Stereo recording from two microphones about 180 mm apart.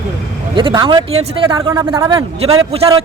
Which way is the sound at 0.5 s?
25° right (ahead or behind).